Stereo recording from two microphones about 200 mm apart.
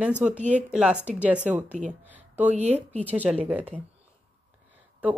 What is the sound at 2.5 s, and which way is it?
Speech, 35° right (ahead or behind).